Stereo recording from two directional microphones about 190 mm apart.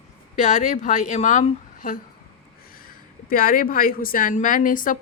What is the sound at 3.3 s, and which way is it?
A woman's voice, 50° left (ahead or behind).